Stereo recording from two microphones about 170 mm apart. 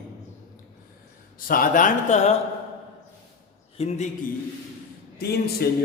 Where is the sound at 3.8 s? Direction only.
40° left (ahead or behind).